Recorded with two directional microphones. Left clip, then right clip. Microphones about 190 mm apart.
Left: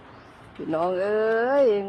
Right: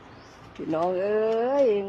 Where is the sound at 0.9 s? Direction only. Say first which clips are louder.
Left 2 dB; centre (ahead or behind).